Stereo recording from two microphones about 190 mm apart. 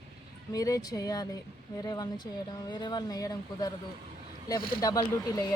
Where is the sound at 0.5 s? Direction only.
20° left (ahead or behind).